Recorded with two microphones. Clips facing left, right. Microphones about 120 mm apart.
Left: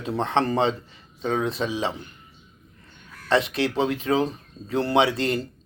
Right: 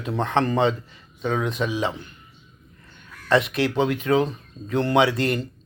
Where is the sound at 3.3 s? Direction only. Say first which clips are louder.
Right 2 dB; 30° left (ahead or behind).